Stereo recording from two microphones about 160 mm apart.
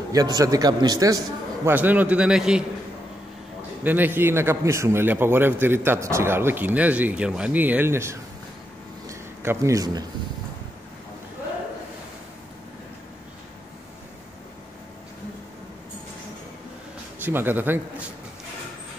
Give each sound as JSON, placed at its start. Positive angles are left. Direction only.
{"t": 0.1, "sound": "a man's voice", "side_deg": -20}
{"t": 3.8, "sound": "a man's voice", "side_deg": -10}
{"t": 9.0, "sound": "a sound", "side_deg": -15}
{"t": 17.2, "sound": "a man's voice", "side_deg": -15}